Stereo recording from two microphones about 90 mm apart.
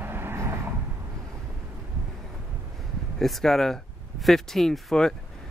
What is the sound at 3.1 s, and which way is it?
Speech, centre (ahead or behind).